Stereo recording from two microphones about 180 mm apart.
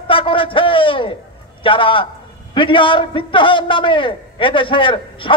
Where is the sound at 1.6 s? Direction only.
30° left (ahead or behind).